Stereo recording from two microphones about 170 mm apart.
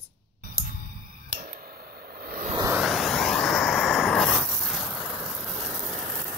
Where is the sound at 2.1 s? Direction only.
65° right (ahead or behind).